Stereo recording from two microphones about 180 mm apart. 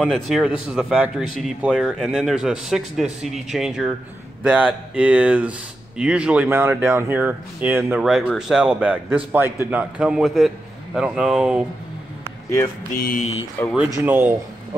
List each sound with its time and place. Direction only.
0.0 s speech: centre (ahead or behind)
12.9 s speech: 50° left (ahead or behind)
13.6 s speech: 10° left (ahead or behind)
14.0 s speech: 10° right (ahead or behind)